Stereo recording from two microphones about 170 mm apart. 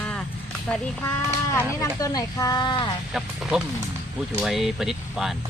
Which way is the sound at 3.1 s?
5° right (ahead or behind).